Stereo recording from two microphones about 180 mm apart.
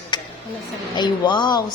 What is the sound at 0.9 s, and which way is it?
Speech, 25° left (ahead or behind).